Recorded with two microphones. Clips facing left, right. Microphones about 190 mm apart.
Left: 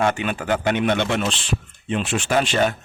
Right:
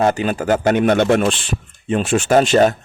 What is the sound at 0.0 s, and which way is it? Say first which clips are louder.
Speech: right 5 dB; 35° right (ahead or behind).